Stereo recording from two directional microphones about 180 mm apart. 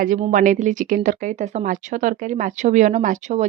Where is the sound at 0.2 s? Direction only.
45° right (ahead or behind).